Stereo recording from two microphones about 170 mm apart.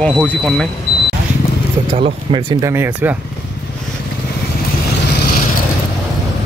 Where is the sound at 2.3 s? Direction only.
25° right (ahead or behind).